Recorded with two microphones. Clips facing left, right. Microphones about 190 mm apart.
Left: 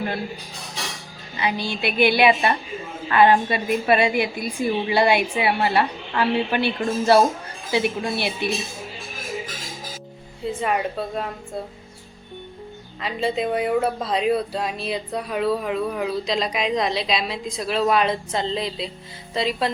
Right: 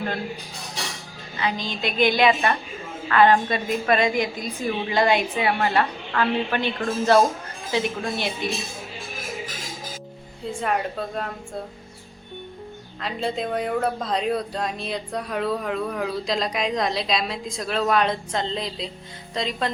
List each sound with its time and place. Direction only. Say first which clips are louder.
1.4 s a woman's voice: left 2 dB; 10° left (ahead or behind)
10.6 s speech: left 1 dB; 5° left (ahead or behind)
13.0 s speech: left 3 dB; 5° left (ahead or behind)